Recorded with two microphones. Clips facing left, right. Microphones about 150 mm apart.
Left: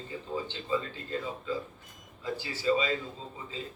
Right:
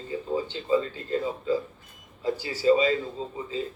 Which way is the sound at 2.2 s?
40° right (ahead or behind).